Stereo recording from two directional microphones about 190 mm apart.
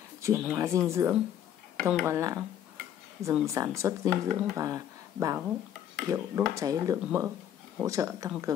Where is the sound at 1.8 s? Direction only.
Centre (ahead or behind).